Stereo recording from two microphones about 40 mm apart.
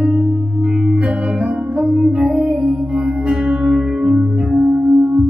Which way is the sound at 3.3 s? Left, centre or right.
Right.